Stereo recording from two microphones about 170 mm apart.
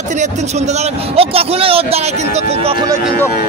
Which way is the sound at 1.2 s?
35° right (ahead or behind).